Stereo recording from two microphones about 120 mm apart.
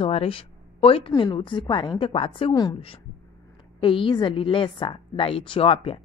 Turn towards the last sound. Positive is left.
turn(degrees=55)  # may be behind; listen again after turning